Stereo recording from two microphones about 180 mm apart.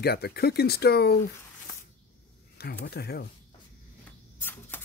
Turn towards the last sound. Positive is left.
turn(degrees=10)  # may be behind; listen again after turning